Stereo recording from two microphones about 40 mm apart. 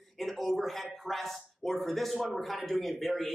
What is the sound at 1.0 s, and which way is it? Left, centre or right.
Speech, centre.